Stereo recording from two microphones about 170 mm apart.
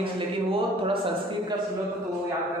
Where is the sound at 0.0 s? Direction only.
30° right (ahead or behind).